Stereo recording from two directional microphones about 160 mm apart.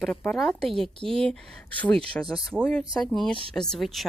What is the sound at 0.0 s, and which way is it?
A woman's voice, centre (ahead or behind).